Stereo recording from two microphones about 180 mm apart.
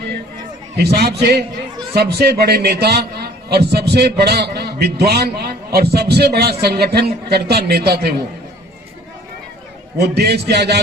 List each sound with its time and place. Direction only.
0.8 s a man's voice: 65° right (ahead or behind)
10.0 s a man's voice: 60° right (ahead or behind)